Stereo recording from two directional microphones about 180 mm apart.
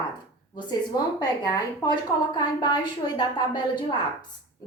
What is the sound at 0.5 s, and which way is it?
A woman's voice, 25° left (ahead or behind).